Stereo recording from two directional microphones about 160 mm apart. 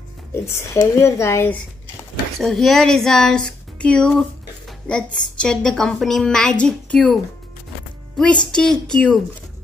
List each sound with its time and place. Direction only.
0.5 s speech: 15° left (ahead or behind)
2.4 s speech: centre (ahead or behind)
8.5 s speech: 5° left (ahead or behind)